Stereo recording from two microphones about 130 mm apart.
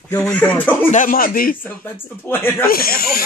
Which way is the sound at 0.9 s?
85° left.